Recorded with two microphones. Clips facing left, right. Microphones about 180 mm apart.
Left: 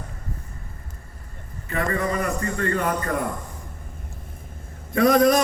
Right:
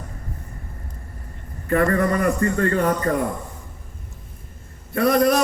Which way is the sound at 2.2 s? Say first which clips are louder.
Right 5 dB; 40° right (ahead or behind).